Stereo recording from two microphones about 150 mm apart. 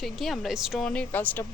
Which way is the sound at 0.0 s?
Centre (ahead or behind).